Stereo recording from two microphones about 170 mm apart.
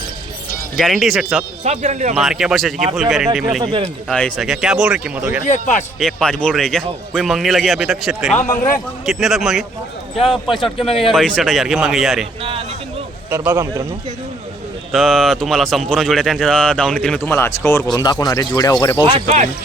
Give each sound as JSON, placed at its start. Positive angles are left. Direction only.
{"t": 0.8, "sound": "speech", "side_deg": 0}
{"t": 1.6, "sound": "speech", "side_deg": -40}
{"t": 2.1, "sound": "speech", "side_deg": 0}
{"t": 3.6, "sound": "speech", "side_deg": -30}
{"t": 4.1, "sound": "speech", "side_deg": 5}
{"t": 5.5, "sound": "speech", "side_deg": 45}
{"t": 6.0, "sound": "speech", "side_deg": 5}
{"t": 12.4, "sound": "speech", "side_deg": -30}
{"t": 13.3, "sound": "speech", "side_deg": -15}
{"t": 14.9, "sound": "speech", "side_deg": 0}
{"t": 19.1, "sound": "speech", "side_deg": -40}